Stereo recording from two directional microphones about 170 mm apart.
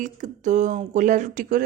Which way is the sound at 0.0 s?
45° right (ahead or behind).